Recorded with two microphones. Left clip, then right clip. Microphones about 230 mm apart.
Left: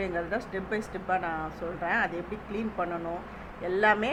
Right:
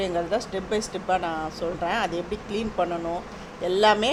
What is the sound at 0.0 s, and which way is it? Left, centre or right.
Speech, right.